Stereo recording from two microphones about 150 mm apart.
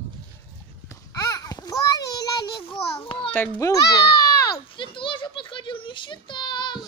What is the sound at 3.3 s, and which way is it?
Speech, 15° left (ahead or behind).